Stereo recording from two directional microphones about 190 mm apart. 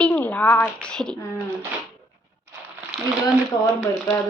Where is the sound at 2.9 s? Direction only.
Centre (ahead or behind).